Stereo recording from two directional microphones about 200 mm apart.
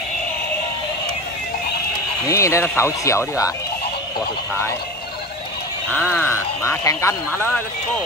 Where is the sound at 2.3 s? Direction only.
15° left (ahead or behind).